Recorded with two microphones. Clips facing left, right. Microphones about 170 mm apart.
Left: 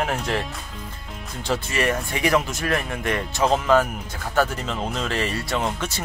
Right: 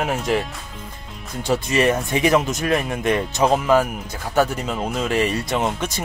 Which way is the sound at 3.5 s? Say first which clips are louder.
Even; 10° right (ahead or behind).